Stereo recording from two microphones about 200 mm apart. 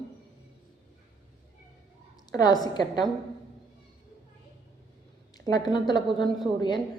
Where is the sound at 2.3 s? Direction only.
20° left (ahead or behind).